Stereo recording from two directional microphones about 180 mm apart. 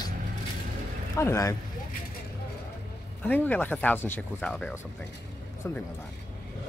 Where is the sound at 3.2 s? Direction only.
10° left (ahead or behind).